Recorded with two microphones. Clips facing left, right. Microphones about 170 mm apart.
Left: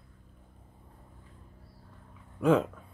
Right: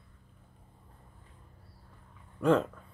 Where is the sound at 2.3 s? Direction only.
5° left (ahead or behind).